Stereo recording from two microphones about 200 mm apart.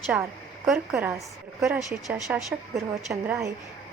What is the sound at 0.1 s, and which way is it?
A woman's voice, 5° right (ahead or behind).